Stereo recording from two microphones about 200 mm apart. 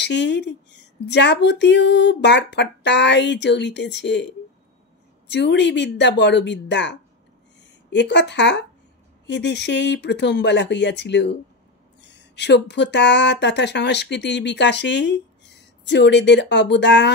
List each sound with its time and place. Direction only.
0.0 s speech: 60° left (ahead or behind)
5.3 s speech: 55° left (ahead or behind)